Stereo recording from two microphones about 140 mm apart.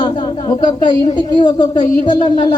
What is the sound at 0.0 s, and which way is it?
A man's voice, 30° left (ahead or behind).